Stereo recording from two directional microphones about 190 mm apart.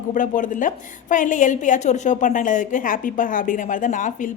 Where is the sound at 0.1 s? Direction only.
45° left (ahead or behind).